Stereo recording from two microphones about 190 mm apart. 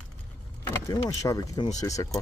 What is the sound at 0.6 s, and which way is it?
Speech, 15° left (ahead or behind).